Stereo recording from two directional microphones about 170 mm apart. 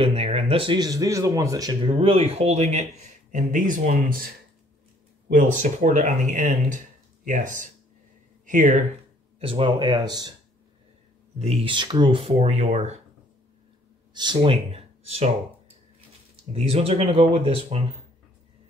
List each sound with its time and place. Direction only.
0.0 s speech: 35° right (ahead or behind); by 4.3 s 55° right (ahead or behind)
5.3 s speech: 50° right (ahead or behind)
9.4 s speech: 30° right (ahead or behind)
11.3 s speech: 35° right (ahead or behind)
14.1 s speech: 25° right (ahead or behind)
16.5 s speech: 35° right (ahead or behind)